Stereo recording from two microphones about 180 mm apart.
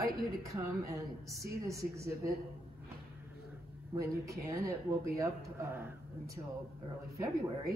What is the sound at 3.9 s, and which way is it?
A woman's voice, 15° right (ahead or behind).